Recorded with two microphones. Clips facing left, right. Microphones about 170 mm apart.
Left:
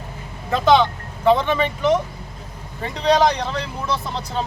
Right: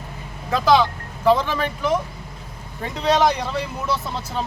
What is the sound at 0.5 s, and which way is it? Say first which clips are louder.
Speech: left 1 dB; centre (ahead or behind).